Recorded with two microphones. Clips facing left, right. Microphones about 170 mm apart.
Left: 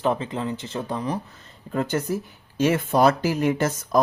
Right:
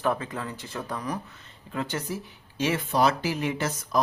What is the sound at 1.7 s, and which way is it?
Speech, 45° left (ahead or behind).